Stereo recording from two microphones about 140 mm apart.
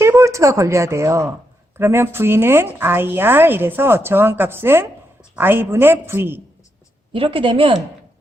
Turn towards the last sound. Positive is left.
turn(degrees=-40)  # may be behind; listen again after turning